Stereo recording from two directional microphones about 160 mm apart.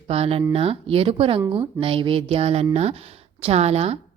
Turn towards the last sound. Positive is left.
turn(degrees=-40)  # may be behind; listen again after turning